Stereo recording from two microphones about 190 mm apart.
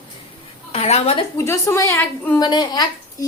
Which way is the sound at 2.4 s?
20° left (ahead or behind).